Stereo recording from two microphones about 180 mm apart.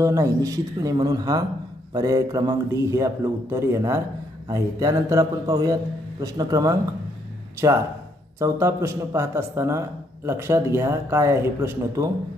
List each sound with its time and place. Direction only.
0.0 s a man's voice: 15° right (ahead or behind)